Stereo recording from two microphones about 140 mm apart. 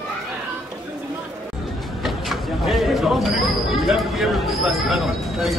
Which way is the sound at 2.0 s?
Centre (ahead or behind).